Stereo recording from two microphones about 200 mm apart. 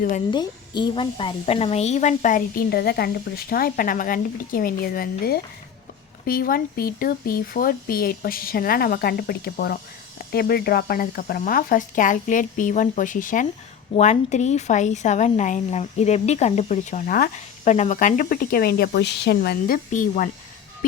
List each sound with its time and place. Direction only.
0.3 s a woman's voice: 20° left (ahead or behind); by 20.3 s 40° left (ahead or behind)